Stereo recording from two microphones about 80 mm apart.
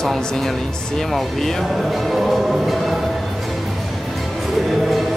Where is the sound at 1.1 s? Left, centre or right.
Centre.